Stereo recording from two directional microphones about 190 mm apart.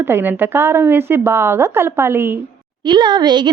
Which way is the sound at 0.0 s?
10° right (ahead or behind).